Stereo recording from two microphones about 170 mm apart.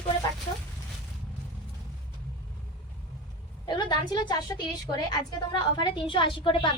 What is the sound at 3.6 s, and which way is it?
A woman's voice, 25° left (ahead or behind).